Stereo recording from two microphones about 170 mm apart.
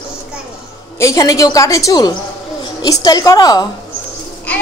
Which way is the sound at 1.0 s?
20° left (ahead or behind).